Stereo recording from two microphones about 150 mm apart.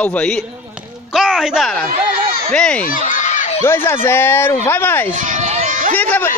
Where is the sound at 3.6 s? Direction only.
15° left (ahead or behind).